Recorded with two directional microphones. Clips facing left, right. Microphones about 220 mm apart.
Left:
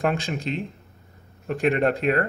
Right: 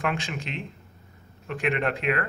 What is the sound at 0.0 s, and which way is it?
Speech, 40° left (ahead or behind).